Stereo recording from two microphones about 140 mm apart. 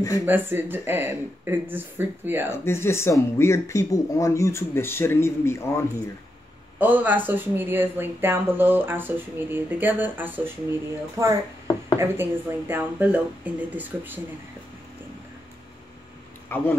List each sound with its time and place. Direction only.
0.3 s speech: 15° right (ahead or behind)
2.5 s speech: 15° left (ahead or behind)
6.8 s speech: 10° right (ahead or behind)
16.4 s speech: 15° left (ahead or behind)